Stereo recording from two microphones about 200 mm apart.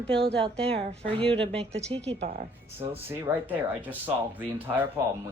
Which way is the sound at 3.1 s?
10° right (ahead or behind).